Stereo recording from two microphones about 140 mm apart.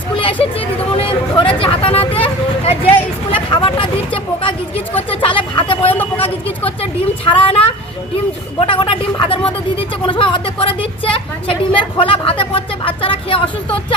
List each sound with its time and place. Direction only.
0.1 s a sound: 40° left (ahead or behind)
0.9 s a woman's voice: 40° left (ahead or behind)
7.3 s a woman's voice: 40° left (ahead or behind)